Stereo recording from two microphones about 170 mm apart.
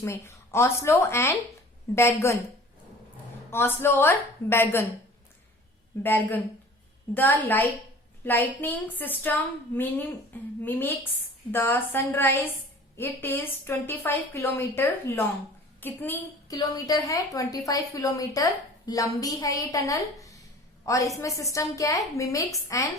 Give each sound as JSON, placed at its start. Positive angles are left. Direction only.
{"t": 0.0, "sound": "a woman's voice", "side_deg": 15}
{"t": 3.5, "sound": "a woman's voice", "side_deg": 15}
{"t": 6.0, "sound": "a woman's voice", "side_deg": 10}